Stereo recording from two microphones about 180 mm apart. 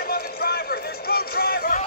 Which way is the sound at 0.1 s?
60° left (ahead or behind).